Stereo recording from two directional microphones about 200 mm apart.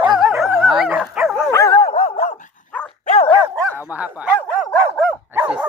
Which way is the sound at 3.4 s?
10° right (ahead or behind).